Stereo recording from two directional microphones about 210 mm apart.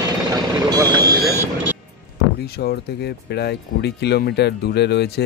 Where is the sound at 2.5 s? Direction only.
50° left (ahead or behind).